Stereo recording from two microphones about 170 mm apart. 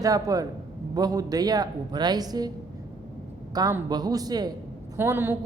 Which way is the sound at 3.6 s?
20° right (ahead or behind).